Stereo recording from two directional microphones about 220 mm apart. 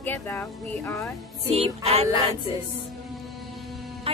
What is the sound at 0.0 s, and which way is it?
Speech, 10° left (ahead or behind).